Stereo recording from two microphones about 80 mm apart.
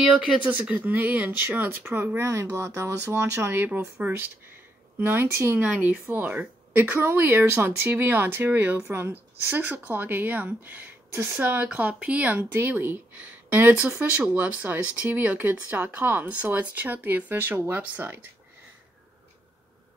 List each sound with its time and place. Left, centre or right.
0.5 s speech: right
4.9 s speech: right
5.6 s speech: centre